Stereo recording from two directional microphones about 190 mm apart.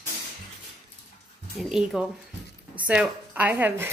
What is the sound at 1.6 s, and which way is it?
Speech, centre (ahead or behind).